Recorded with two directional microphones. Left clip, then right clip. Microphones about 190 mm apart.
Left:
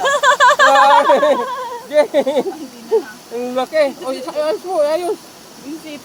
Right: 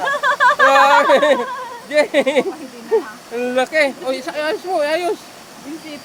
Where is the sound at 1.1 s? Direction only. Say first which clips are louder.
Even; 15° right (ahead or behind).